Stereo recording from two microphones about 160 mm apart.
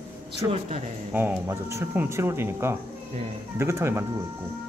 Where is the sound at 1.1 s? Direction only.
10° right (ahead or behind).